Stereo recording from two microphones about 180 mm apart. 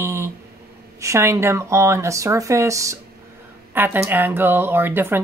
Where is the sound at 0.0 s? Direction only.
15° right (ahead or behind).